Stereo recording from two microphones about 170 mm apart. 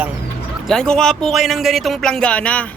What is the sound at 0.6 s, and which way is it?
A man's voice, 5° left (ahead or behind).